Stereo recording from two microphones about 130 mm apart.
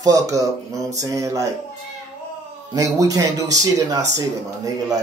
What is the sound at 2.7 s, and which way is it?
Mantra, 25° right (ahead or behind).